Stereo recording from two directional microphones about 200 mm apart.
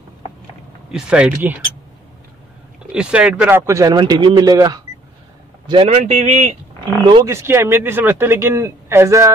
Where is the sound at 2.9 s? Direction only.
5° right (ahead or behind); by 6.4 s 35° right (ahead or behind).